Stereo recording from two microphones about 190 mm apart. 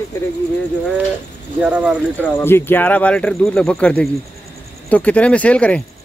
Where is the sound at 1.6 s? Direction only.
5° right (ahead or behind).